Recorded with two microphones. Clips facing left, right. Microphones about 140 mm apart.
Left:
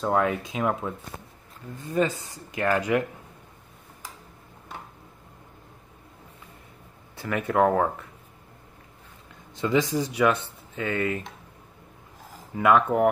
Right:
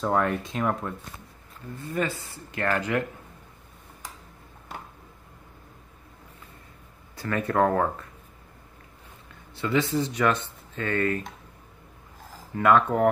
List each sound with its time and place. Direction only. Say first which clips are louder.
0.0 s speech: left 1 dB; 5° left (ahead or behind)
1.9 s speech: left 4 dB; 20° left (ahead or behind)
7.4 s speech: left 2 dB; 5° left (ahead or behind)
9.6 s speech: left 1 dB; 15° left (ahead or behind)
12.5 s speech: even; 10° left (ahead or behind)